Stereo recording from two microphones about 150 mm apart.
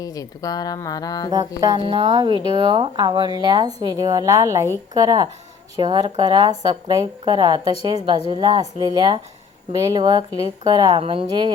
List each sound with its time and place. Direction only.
0.0 s speech: 25° left (ahead or behind)
1.3 s speech: 25° right (ahead or behind)